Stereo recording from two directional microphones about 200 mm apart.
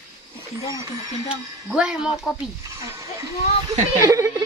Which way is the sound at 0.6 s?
15° right (ahead or behind).